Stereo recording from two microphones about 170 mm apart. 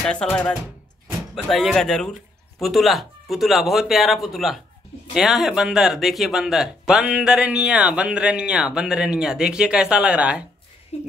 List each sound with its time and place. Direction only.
0.0 s speech: 5° left (ahead or behind)
10.9 s speech: 40° left (ahead or behind)